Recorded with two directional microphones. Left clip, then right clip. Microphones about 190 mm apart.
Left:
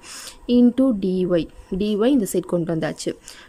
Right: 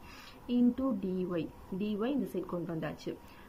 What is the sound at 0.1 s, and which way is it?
A woman's voice, 40° left (ahead or behind).